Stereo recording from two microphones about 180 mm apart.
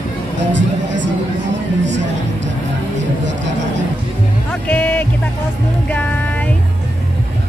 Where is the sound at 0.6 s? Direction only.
90° right.